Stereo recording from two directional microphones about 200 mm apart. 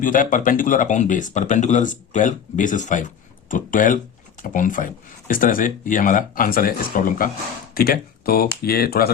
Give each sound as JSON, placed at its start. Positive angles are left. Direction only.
{"t": 0.0, "sound": "speech", "side_deg": 40}